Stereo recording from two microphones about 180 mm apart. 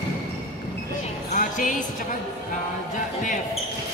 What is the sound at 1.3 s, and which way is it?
Music, 45° left (ahead or behind).